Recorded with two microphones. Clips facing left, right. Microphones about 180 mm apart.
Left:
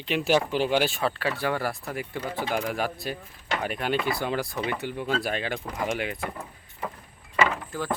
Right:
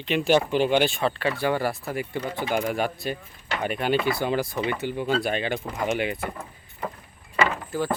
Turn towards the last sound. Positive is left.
turn(degrees=-5)  # may be behind; listen again after turning